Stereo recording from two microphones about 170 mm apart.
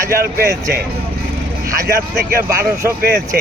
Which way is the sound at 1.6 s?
20° right (ahead or behind).